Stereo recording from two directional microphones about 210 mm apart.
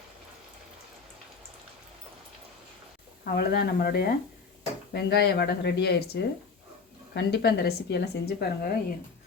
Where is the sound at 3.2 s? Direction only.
50° left (ahead or behind).